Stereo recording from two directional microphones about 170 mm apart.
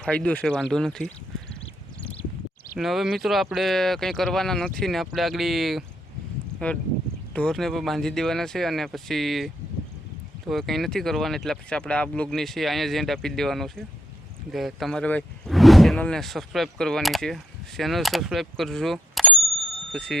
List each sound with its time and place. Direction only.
0.0 s speech: 5° left (ahead or behind)
2.7 s speech: centre (ahead or behind)
10.5 s speech: centre (ahead or behind)